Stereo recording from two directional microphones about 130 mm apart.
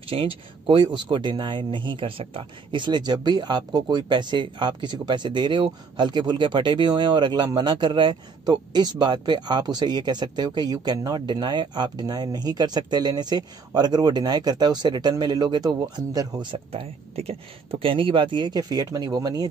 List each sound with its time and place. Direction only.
0.0 s speech: 45° right (ahead or behind)
16.7 s speech: 50° right (ahead or behind); by 19.4 s 30° right (ahead or behind)